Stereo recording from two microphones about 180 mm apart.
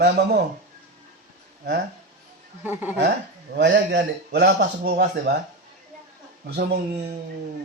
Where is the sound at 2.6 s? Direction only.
10° right (ahead or behind).